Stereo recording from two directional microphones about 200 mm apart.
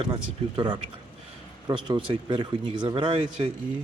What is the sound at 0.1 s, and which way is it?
Speech, 25° right (ahead or behind).